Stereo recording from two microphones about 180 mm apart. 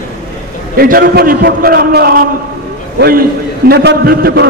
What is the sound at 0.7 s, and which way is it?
A man's voice, 55° right (ahead or behind).